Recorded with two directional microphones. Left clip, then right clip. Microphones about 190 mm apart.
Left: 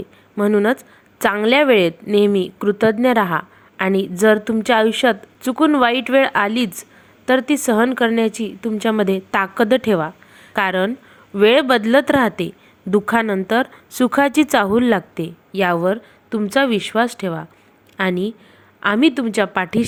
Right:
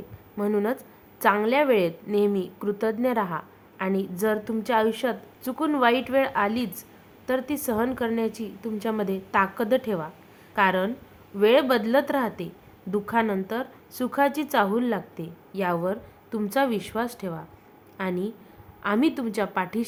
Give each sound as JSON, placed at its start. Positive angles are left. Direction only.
{"t": 0.3, "sound": "a woman's voice", "side_deg": 30}